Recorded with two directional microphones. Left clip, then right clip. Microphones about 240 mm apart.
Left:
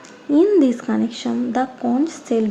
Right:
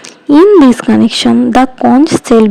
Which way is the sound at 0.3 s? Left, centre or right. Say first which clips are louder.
Right 11 dB; right.